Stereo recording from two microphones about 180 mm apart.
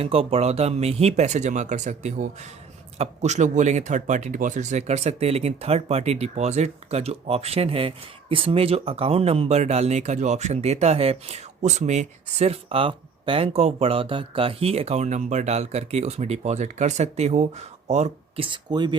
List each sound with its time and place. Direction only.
0.0 s speech: 35° right (ahead or behind)
18.4 s speech: 25° right (ahead or behind)